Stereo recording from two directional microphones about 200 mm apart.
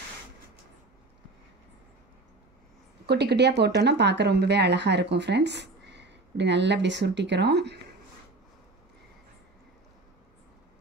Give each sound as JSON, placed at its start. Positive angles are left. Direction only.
{"t": 3.1, "sound": "speech", "side_deg": -55}